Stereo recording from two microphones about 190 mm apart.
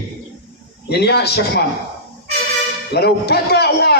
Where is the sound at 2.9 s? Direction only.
60° left (ahead or behind).